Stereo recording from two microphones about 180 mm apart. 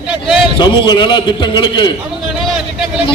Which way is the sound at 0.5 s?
25° left (ahead or behind).